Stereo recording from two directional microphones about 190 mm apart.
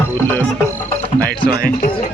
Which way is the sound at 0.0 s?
10° left (ahead or behind).